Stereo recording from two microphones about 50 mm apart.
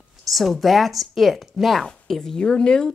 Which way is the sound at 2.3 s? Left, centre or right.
Centre.